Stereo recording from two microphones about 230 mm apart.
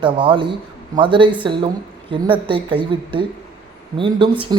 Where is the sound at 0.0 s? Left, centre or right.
Right.